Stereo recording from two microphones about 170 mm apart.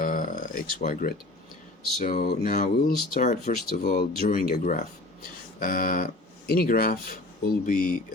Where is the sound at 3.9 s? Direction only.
60° left (ahead or behind).